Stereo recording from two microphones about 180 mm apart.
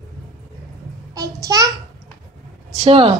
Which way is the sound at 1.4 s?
20° right (ahead or behind).